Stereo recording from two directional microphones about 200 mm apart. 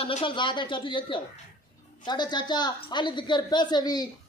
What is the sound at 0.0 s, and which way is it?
A woman's voice, 25° left (ahead or behind).